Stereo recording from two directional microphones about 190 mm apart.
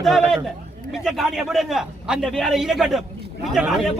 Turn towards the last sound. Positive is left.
turn(degrees=0)  # may be behind; listen again after turning